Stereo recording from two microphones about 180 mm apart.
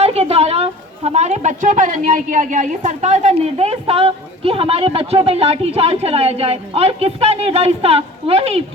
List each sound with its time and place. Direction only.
0.0 s a woman's voice: 35° right (ahead or behind)